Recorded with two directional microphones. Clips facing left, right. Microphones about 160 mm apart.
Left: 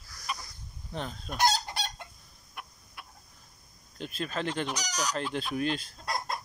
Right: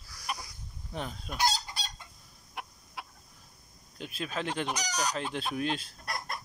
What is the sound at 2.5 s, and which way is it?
Chicken, 75° right (ahead or behind).